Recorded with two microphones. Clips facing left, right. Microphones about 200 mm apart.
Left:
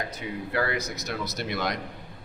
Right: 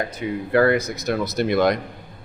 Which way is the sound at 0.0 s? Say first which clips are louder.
Right 7 dB; 55° right (ahead or behind).